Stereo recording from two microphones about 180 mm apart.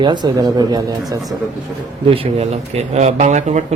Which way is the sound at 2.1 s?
35° right (ahead or behind).